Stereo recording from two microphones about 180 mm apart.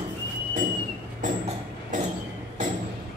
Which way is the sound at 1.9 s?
45° right (ahead or behind).